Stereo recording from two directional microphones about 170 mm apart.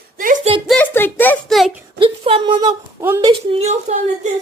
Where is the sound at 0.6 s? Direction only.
10° left (ahead or behind).